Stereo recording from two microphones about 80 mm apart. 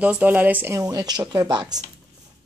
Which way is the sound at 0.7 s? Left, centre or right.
Right.